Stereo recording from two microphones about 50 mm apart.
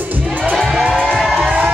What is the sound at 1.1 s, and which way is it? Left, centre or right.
Music, centre.